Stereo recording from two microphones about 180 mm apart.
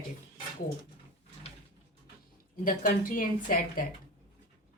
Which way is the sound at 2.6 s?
50° left (ahead or behind).